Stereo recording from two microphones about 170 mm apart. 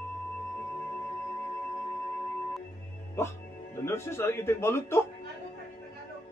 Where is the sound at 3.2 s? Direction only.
15° left (ahead or behind).